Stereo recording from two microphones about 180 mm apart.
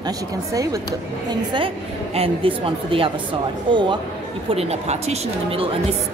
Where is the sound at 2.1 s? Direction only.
30° right (ahead or behind).